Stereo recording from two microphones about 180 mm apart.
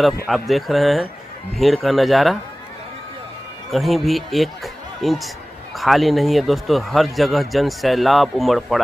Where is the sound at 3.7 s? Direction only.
Centre (ahead or behind).